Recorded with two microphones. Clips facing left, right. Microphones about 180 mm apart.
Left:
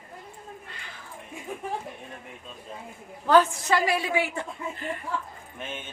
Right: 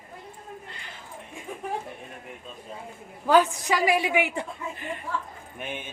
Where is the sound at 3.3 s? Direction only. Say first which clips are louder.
Even; 15° right (ahead or behind).